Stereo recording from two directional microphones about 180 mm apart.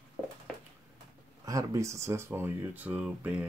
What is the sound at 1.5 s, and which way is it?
Speech, 15° right (ahead or behind).